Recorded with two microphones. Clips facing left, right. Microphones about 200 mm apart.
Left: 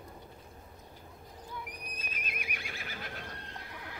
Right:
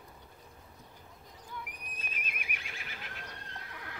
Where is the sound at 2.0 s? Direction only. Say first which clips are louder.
Left 1 dB; 40° left (ahead or behind).